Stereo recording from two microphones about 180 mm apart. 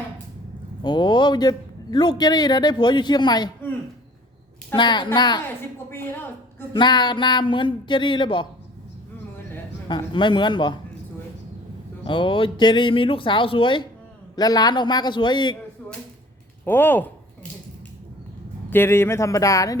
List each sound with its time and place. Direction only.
0.8 s a man's voice: 25° left (ahead or behind)
4.7 s a man's voice: 25° left (ahead or behind)
5.9 s a man's voice: 15° left (ahead or behind)
6.7 s a man's voice: 25° left (ahead or behind)
9.9 s a man's voice: 25° left (ahead or behind)
12.0 s a man's voice: 25° left (ahead or behind)
16.6 s speech: 10° left (ahead or behind)
18.7 s speech: 15° left (ahead or behind)